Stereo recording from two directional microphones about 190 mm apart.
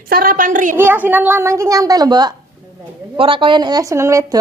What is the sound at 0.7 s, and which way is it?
A woman's voice, 10° right (ahead or behind).